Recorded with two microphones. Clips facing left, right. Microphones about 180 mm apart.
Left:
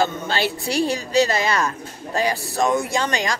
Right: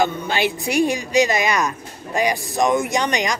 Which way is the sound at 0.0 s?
15° right (ahead or behind).